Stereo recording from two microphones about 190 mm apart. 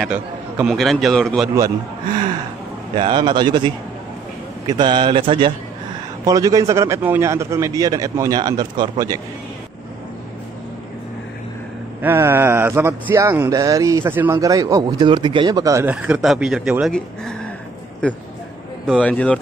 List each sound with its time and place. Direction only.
0.7 s a man's voice: centre (ahead or behind)
3.0 s a man's voice: 25° right (ahead or behind)
12.0 s a man's voice: 10° right (ahead or behind); by 19.3 s 5° left (ahead or behind)